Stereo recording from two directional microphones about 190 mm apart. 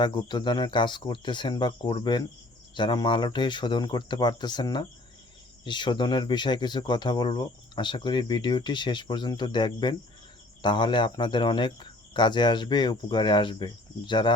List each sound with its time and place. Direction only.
0.0 s speech: 25° left (ahead or behind)